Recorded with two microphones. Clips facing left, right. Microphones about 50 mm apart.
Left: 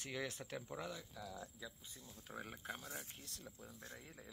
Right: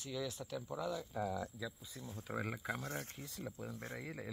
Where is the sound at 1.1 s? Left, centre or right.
Right.